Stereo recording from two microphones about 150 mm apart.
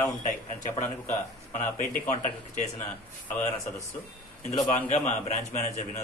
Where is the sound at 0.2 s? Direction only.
55° left (ahead or behind).